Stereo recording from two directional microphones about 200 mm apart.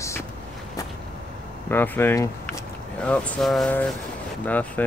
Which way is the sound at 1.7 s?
10° left (ahead or behind).